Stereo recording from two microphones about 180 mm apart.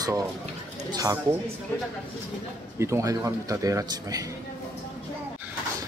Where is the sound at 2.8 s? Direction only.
15° right (ahead or behind).